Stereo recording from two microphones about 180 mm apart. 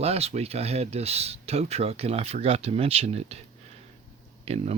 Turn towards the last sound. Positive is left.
turn(degrees=-35)  # may be behind; listen again after turning